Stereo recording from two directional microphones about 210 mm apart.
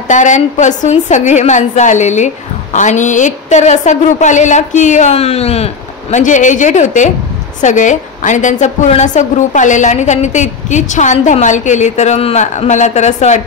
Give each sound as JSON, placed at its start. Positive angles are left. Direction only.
{"t": 0.1, "sound": "a woman's voice", "side_deg": 35}